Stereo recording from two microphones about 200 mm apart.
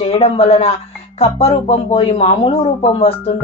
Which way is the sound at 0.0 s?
30° left (ahead or behind).